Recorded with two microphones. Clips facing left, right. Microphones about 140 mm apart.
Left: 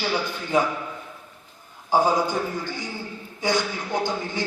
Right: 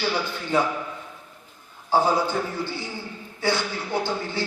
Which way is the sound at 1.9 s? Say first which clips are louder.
Left 1 dB; 15° left (ahead or behind).